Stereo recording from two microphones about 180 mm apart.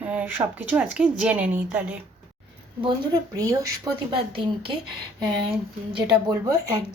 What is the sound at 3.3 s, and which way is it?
Speech, 20° right (ahead or behind).